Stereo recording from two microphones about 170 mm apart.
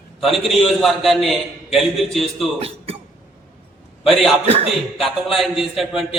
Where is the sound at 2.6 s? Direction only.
35° right (ahead or behind).